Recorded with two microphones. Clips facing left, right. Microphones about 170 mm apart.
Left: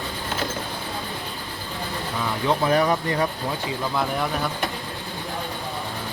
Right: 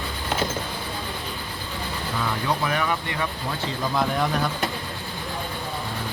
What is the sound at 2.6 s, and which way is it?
Speech, 35° left (ahead or behind).